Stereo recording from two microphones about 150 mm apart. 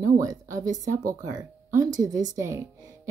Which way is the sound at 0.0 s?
20° right (ahead or behind).